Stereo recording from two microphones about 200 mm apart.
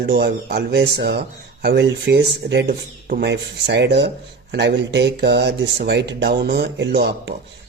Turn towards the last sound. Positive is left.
turn(degrees=-55)  # may be behind; listen again after turning